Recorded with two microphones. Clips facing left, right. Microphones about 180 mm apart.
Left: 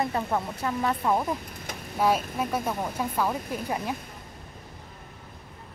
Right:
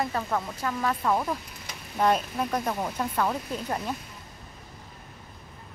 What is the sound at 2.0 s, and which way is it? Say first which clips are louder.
A woman's voice: even; 5° left (ahead or behind).